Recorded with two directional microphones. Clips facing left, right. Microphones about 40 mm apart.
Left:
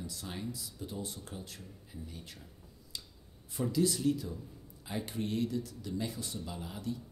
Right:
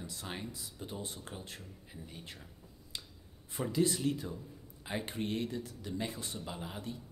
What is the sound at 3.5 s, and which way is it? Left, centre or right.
Speech, right.